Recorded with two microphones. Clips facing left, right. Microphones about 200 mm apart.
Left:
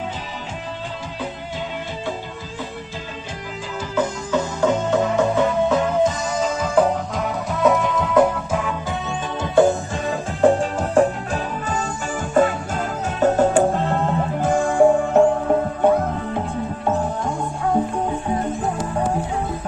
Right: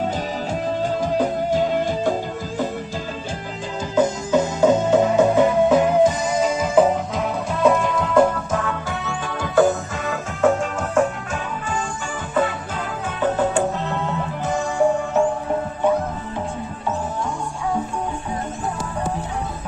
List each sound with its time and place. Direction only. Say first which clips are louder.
1.0 s music: right 10 dB; 45° right (ahead or behind)
3.9 s music: right 4 dB; 20° right (ahead or behind)
6.6 s music: right 1 dB; 5° right (ahead or behind); by 8.7 s 10° left (ahead or behind)
9.4 s music: left 1 dB; 25° left (ahead or behind)
13.2 s music: left 4 dB; 45° left (ahead or behind)